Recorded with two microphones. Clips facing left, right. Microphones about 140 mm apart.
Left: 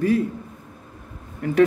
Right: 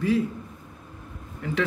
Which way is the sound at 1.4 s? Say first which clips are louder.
Left 5 dB; 50° left (ahead or behind).